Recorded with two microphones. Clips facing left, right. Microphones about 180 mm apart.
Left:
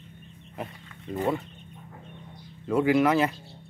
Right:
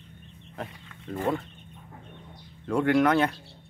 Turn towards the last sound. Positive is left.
turn(degrees=5)  # may be behind; listen again after turning